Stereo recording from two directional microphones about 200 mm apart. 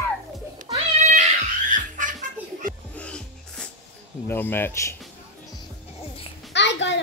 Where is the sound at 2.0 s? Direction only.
40° right (ahead or behind).